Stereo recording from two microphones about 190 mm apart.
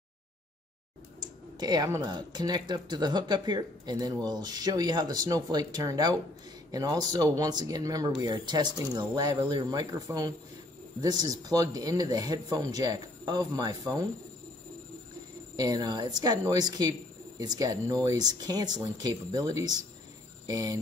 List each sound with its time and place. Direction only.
1.2 s speech: 20° right (ahead or behind)
15.5 s speech: 20° right (ahead or behind)